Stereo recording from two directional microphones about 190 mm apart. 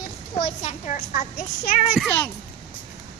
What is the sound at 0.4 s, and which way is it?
A woman's voice, 35° left (ahead or behind).